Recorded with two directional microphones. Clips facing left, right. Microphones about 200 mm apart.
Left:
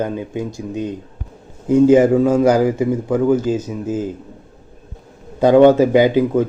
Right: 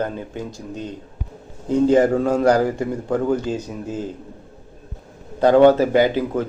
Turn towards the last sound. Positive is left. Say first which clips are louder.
# left 5 dB
turn(degrees=15)  # may be behind; listen again after turning